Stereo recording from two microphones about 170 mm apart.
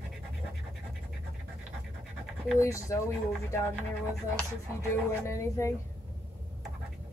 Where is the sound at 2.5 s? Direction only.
20° left (ahead or behind).